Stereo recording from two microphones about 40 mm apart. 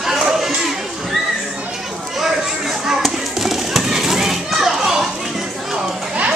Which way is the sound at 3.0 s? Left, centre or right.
Centre.